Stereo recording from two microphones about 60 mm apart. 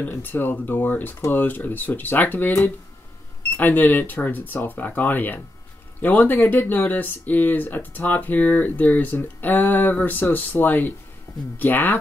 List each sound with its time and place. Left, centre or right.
0.0 s speech: left